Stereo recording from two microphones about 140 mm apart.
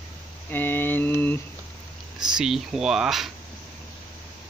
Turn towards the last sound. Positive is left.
turn(degrees=0)  # may be behind; listen again after turning